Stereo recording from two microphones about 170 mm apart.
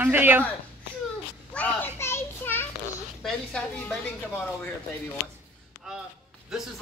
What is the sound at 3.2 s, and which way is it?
Speech, 5° left (ahead or behind).